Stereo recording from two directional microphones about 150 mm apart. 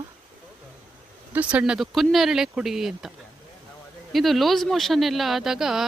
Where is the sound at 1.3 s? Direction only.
10° right (ahead or behind).